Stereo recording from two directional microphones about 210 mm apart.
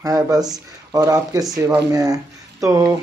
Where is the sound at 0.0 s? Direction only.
15° right (ahead or behind).